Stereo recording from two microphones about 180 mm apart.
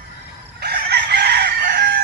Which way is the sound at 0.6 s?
65° right (ahead or behind).